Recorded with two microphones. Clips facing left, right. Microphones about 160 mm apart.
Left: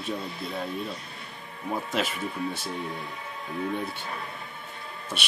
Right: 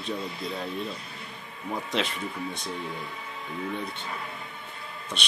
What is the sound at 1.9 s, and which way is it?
Speech, 5° left (ahead or behind).